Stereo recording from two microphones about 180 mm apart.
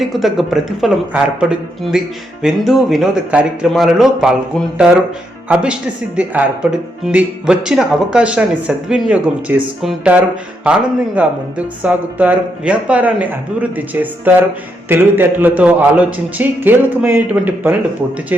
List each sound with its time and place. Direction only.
0.0 s speech: centre (ahead or behind)
5.5 s speech: 5° right (ahead or behind)